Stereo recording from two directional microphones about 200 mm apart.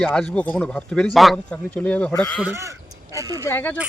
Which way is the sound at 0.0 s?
5° left (ahead or behind).